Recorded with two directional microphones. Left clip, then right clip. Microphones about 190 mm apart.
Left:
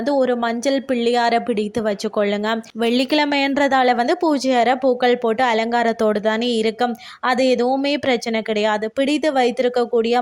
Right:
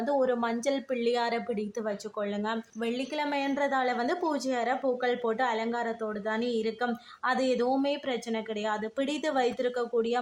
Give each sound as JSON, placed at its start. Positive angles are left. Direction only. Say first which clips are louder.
{"t": 0.1, "sound": "a woman's voice", "louder": "left 9 dB", "side_deg": 35}
{"t": 2.8, "sound": "a woman's voice", "louder": "left 14 dB", "side_deg": 50}